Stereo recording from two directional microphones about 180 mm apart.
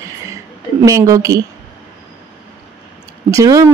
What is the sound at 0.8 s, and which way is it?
Speech, 20° right (ahead or behind).